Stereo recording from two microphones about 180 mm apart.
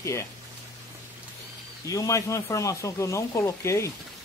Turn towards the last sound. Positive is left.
turn(degrees=15)  # may be behind; listen again after turning